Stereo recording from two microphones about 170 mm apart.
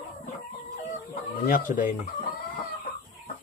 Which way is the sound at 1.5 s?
50° left (ahead or behind).